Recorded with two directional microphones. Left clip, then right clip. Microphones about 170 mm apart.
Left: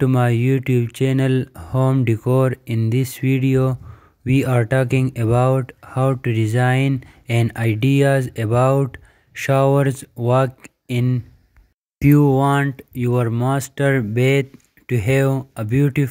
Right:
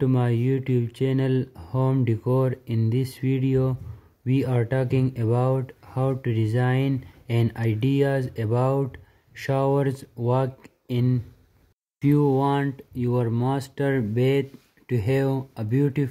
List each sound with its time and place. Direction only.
0.0 s speech: 30° left (ahead or behind)